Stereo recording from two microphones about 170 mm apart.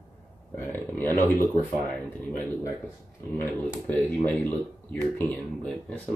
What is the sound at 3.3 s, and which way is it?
Speech, 10° left (ahead or behind).